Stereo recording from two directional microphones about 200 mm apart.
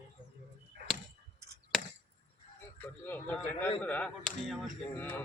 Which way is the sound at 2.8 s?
10° left (ahead or behind).